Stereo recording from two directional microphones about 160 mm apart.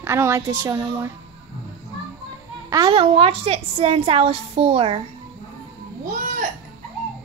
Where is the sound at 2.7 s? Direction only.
25° right (ahead or behind).